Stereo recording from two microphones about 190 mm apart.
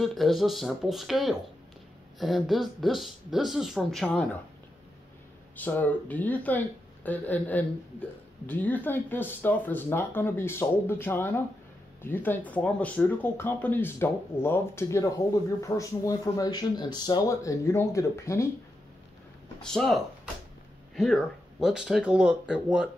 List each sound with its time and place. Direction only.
0.0 s speech: centre (ahead or behind)
5.6 s speech: 10° left (ahead or behind)
19.6 s speech: centre (ahead or behind)